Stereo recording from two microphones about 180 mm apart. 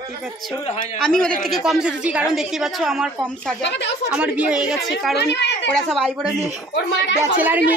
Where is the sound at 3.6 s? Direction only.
70° left (ahead or behind).